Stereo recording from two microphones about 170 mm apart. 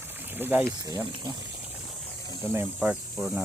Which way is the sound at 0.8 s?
25° right (ahead or behind).